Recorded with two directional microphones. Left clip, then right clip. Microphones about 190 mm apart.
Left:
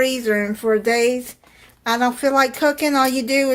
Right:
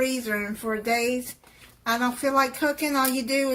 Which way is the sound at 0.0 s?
50° left (ahead or behind).